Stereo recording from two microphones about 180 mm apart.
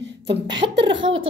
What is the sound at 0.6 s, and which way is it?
Speech, 35° right (ahead or behind).